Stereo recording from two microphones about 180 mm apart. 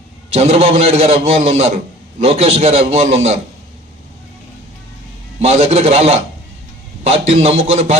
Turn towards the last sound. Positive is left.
turn(degrees=-35)  # may be behind; listen again after turning